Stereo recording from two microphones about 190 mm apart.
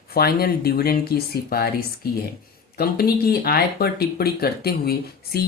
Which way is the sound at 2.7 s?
55° left (ahead or behind).